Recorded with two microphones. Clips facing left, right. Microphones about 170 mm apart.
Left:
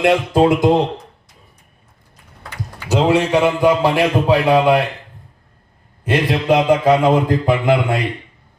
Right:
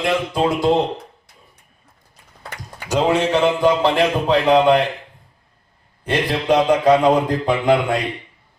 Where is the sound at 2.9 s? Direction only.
10° left (ahead or behind).